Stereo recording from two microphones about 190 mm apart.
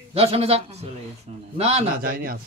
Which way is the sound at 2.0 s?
50° right (ahead or behind).